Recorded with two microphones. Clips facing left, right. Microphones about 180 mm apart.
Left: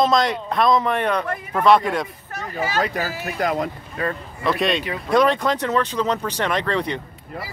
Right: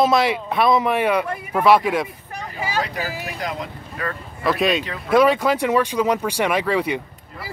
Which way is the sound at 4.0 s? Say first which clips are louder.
Left 3 dB; 30° left (ahead or behind).